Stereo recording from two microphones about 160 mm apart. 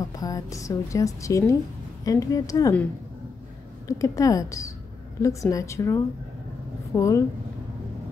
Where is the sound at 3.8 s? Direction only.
20° left (ahead or behind).